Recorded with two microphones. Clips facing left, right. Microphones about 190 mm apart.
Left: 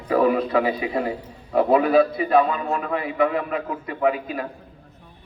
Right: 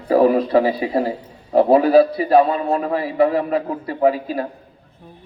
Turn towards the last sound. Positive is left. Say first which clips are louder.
# right 5 dB
turn(degrees=-35)  # may be behind; listen again after turning